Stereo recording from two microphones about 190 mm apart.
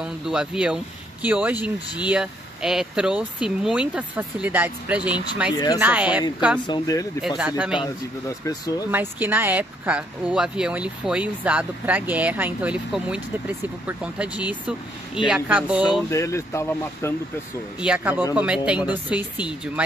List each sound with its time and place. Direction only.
0.0 s speech: 5° right (ahead or behind)
5.5 s speech: 20° left (ahead or behind)
5.8 s speech: 10° right (ahead or behind)
6.7 s speech: 15° left (ahead or behind)
7.2 s speech: 5° right (ahead or behind)
7.7 s speech: 20° left (ahead or behind)
8.9 s speech: 10° right (ahead or behind)
15.9 s speech: 15° left (ahead or behind)
17.7 s speech: 5° right (ahead or behind)